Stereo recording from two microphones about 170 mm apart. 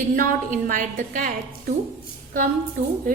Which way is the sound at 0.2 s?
55° right (ahead or behind).